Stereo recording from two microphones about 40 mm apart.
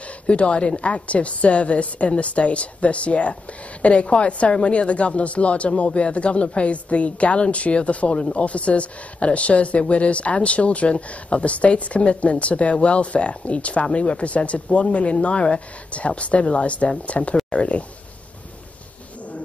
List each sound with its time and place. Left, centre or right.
0.3 s a woman's voice: left